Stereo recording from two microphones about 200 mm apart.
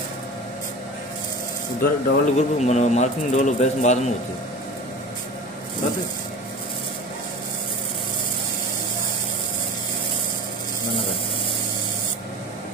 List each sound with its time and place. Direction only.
1.8 s speech: 35° left (ahead or behind)